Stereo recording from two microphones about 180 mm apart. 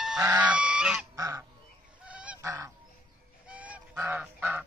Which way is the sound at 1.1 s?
20° right (ahead or behind).